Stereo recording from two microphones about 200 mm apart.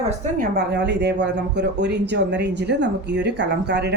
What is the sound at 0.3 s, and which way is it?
A woman's voice, 50° right (ahead or behind).